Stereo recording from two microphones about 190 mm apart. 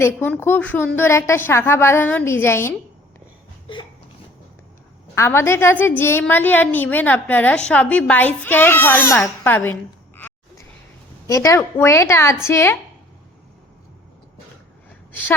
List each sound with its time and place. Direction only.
0.0 s a woman's voice: 10° left (ahead or behind)
5.1 s a woman's voice: 15° left (ahead or behind)
10.2 s a sound: 10° left (ahead or behind)
11.3 s a woman's voice: 15° left (ahead or behind)